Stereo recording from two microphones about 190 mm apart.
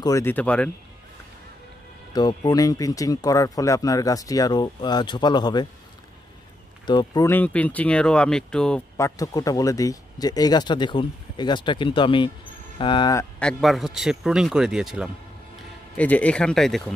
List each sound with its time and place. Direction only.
0.0 s speech: 15° left (ahead or behind)
2.1 s speech: 20° left (ahead or behind)
6.9 s speech: 20° left (ahead or behind); by 8.8 s 5° left (ahead or behind)
8.9 s speech: 15° left (ahead or behind)
13.4 s speech: centre (ahead or behind)
16.0 s speech: 5° left (ahead or behind)